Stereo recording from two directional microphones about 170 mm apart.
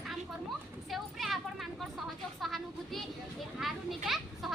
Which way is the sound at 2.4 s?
Centre (ahead or behind).